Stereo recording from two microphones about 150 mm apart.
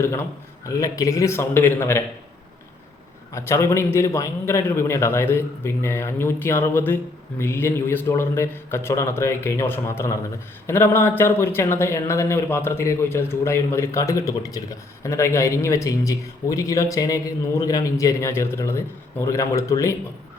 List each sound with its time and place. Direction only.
0.0 s a man's voice: 15° left (ahead or behind)
3.3 s a man's voice: 20° left (ahead or behind)